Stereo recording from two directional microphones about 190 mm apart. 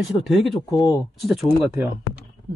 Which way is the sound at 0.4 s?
25° left (ahead or behind).